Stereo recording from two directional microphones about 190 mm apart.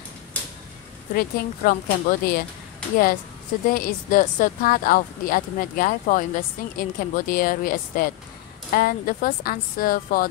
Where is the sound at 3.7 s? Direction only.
45° left (ahead or behind).